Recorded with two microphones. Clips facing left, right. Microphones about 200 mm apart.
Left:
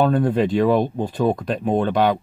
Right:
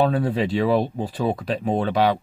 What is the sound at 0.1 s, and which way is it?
Speech, 5° right (ahead or behind).